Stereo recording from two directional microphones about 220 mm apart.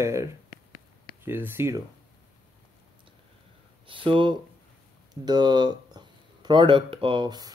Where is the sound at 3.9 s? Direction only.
25° right (ahead or behind).